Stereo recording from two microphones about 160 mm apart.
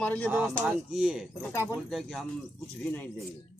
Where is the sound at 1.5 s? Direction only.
15° left (ahead or behind).